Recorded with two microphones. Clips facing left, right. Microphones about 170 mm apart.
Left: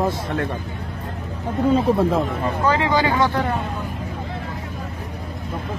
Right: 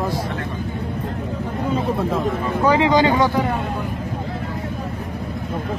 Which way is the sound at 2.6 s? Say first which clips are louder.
Right 4 dB; 15° right (ahead or behind).